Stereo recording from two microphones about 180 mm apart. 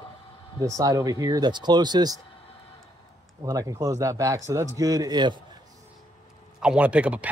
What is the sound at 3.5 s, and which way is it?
Speech, 20° right (ahead or behind).